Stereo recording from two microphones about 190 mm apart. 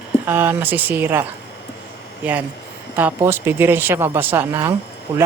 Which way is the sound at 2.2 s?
10° right (ahead or behind).